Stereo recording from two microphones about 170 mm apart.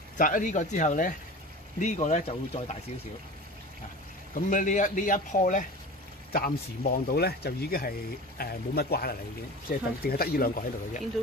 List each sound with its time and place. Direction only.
0.2 s a man's voice: 50° left (ahead or behind)
4.3 s a man's voice: 50° left (ahead or behind)
6.3 s speech: 60° left (ahead or behind)